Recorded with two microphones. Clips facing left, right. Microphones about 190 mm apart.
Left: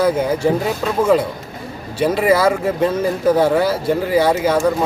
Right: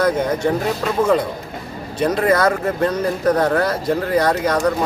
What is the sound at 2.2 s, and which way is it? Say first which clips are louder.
Speech: left 2 dB; 5° left (ahead or behind).